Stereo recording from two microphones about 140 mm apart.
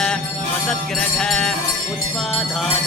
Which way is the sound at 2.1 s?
Centre (ahead or behind).